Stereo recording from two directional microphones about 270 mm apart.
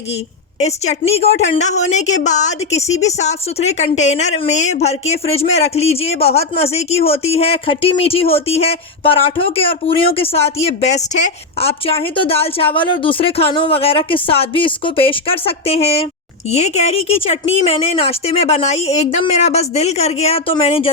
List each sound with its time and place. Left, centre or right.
0.6 s a woman's voice: left